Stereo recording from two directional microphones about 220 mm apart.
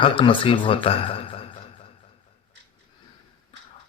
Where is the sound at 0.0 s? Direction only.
25° left (ahead or behind).